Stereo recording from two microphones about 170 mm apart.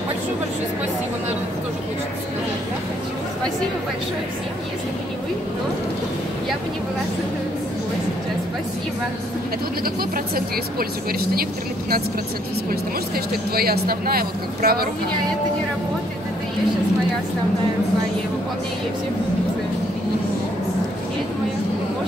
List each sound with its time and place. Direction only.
10.1 s speech: 60° right (ahead or behind)
13.1 s speech: 65° right (ahead or behind)